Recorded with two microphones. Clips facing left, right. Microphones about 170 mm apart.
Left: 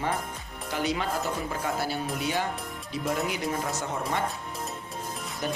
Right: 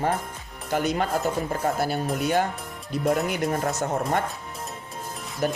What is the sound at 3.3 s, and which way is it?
Speech, 50° right (ahead or behind).